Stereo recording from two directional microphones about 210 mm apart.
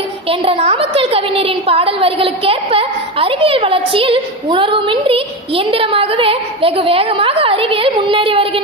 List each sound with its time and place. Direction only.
0.3 s a woman's voice: 25° right (ahead or behind)